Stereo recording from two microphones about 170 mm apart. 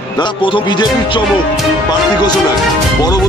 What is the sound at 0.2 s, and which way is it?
Speech, 30° left (ahead or behind).